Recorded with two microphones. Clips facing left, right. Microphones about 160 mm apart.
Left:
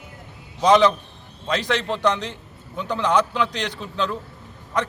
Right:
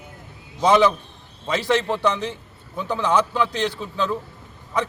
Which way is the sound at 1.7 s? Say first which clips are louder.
Right 2 dB; 10° right (ahead or behind).